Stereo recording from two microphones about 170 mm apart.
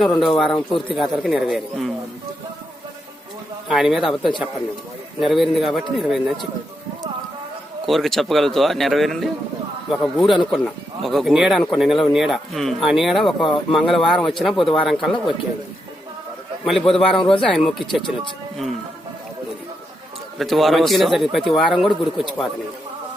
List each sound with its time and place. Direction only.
0.0 s speech: centre (ahead or behind)
3.7 s speech: centre (ahead or behind)
7.9 s speech: centre (ahead or behind)
13.4 s speech: 30° left (ahead or behind)
13.8 s speech: centre (ahead or behind)
16.6 s speech: centre (ahead or behind)
20.4 s speech: centre (ahead or behind)